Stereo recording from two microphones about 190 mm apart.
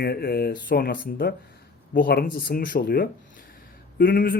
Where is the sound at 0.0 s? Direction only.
55° left (ahead or behind).